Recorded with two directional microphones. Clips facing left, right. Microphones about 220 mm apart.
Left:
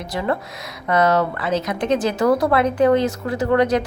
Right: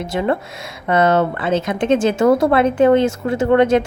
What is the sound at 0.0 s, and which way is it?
Speech, 25° right (ahead or behind).